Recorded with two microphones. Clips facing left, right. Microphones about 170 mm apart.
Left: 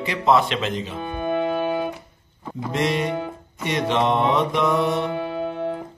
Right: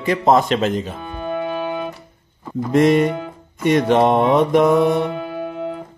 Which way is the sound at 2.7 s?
50° right (ahead or behind).